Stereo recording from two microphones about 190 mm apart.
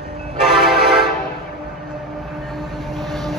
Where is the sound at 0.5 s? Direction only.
Centre (ahead or behind).